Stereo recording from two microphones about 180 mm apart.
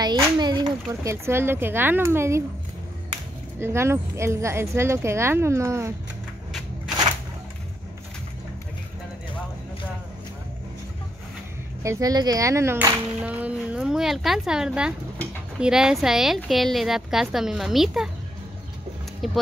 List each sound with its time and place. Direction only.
0.0 s speech: 25° right (ahead or behind)
3.5 s speech: 15° right (ahead or behind)
11.8 s a child's voice: 20° right (ahead or behind); by 18.1 s centre (ahead or behind)
19.2 s a child's voice: centre (ahead or behind)